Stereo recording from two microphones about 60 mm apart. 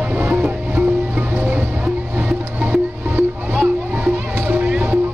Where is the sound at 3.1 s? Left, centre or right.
Right.